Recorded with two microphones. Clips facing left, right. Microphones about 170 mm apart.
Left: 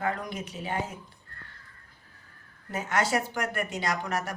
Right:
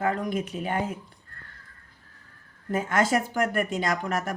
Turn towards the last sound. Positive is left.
turn(degrees=-50)  # may be behind; listen again after turning